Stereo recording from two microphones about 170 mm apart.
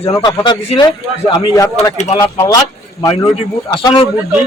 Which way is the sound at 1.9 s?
40° left (ahead or behind).